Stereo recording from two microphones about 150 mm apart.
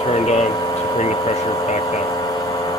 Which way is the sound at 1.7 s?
40° left (ahead or behind).